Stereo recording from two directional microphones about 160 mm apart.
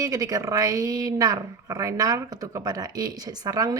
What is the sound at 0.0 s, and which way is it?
Speech, 20° right (ahead or behind).